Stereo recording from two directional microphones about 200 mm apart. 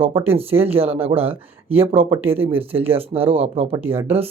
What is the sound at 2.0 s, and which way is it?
Speech, 10° right (ahead or behind).